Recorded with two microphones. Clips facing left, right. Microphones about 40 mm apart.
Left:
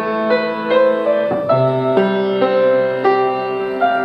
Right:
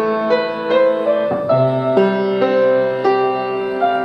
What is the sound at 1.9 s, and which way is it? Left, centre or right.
Music, left.